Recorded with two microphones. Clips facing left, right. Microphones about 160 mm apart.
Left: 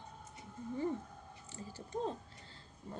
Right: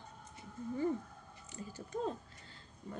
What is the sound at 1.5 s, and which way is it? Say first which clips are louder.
Speech: right 1 dB; 30° left (ahead or behind).